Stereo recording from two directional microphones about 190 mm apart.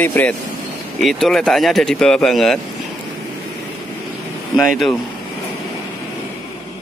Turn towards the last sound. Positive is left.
turn(degrees=0)  # may be behind; listen again after turning